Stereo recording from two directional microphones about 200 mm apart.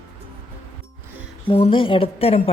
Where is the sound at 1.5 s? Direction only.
25° left (ahead or behind).